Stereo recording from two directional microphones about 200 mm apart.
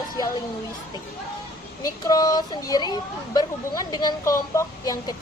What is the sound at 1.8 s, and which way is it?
Speech, 20° left (ahead or behind).